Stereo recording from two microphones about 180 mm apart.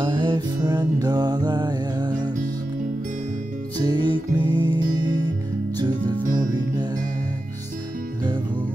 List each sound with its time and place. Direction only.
0.0 s music: 25° right (ahead or behind)
3.7 s music: 20° right (ahead or behind)